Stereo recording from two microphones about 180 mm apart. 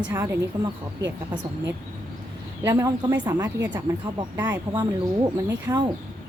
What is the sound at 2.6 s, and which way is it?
Speech, 20° right (ahead or behind).